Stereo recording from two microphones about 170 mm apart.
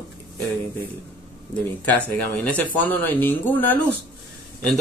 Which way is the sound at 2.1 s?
10° left (ahead or behind).